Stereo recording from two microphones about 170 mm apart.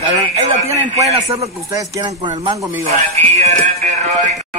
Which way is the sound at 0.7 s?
40° right (ahead or behind).